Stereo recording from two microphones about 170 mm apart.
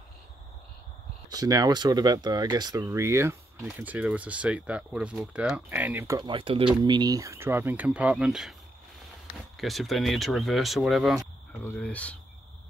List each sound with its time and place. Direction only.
1.3 s speech: 20° right (ahead or behind); by 8.5 s 5° right (ahead or behind)
9.6 s speech: centre (ahead or behind)
11.6 s speech: 10° left (ahead or behind)